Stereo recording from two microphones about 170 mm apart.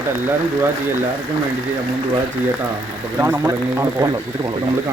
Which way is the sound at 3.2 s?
15° right (ahead or behind).